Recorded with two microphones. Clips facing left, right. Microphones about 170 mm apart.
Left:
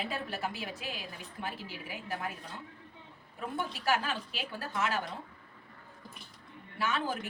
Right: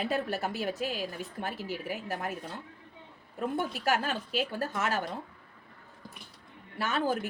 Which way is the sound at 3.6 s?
45° right (ahead or behind).